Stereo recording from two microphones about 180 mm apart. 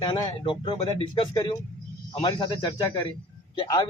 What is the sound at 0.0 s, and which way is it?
Speech, 25° left (ahead or behind).